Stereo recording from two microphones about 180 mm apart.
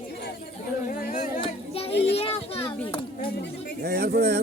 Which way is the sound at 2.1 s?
30° left (ahead or behind).